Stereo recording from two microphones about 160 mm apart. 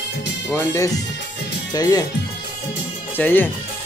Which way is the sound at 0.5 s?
20° left (ahead or behind).